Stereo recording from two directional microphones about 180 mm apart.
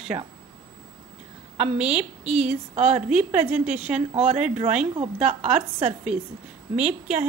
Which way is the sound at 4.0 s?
35° right (ahead or behind).